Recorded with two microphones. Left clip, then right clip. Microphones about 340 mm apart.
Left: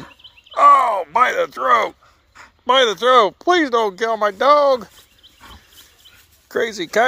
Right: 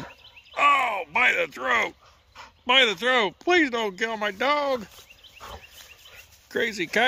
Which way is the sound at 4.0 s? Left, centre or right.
Centre.